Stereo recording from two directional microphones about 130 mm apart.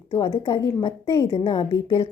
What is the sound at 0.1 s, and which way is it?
A woman's voice, 40° left (ahead or behind).